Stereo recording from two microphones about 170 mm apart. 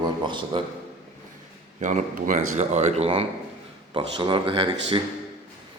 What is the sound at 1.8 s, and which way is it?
Speech, 50° right (ahead or behind).